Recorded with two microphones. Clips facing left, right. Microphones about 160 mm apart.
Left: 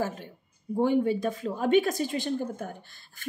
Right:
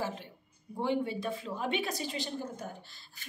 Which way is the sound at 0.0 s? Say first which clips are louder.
Left 5 dB; 45° left (ahead or behind).